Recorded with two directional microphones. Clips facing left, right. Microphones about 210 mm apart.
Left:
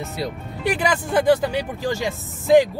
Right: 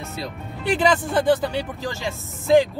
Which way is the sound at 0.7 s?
15° left (ahead or behind).